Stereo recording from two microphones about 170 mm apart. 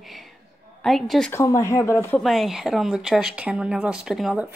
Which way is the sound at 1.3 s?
20° left (ahead or behind).